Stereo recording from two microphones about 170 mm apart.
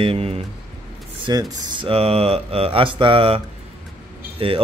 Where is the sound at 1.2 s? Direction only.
20° right (ahead or behind).